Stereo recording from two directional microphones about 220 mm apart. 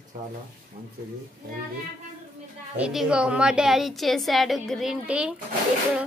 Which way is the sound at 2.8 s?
5° right (ahead or behind).